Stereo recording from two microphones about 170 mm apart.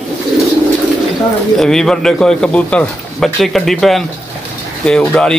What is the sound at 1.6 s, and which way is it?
Speech, 5° left (ahead or behind).